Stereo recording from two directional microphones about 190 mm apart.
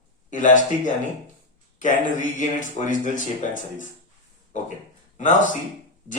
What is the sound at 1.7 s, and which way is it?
Speech, 40° left (ahead or behind).